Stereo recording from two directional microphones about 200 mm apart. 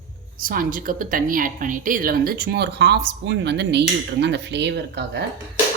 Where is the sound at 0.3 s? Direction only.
45° right (ahead or behind).